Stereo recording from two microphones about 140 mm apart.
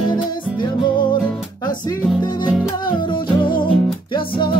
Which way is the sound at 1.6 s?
30° left (ahead or behind).